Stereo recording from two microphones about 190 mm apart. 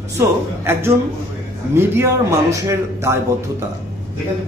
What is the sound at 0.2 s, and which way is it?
Speech, 15° right (ahead or behind).